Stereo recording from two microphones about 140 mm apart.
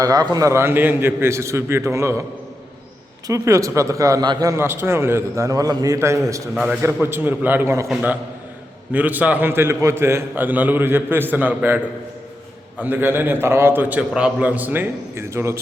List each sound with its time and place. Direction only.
0.0 s a man's voice: 30° right (ahead or behind)
3.2 s a man's voice: 20° right (ahead or behind)
8.9 s a man's voice: 10° right (ahead or behind)
12.8 s a man's voice: 15° right (ahead or behind)